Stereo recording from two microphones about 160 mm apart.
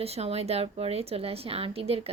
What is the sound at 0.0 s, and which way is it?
A woman's voice, 40° right (ahead or behind).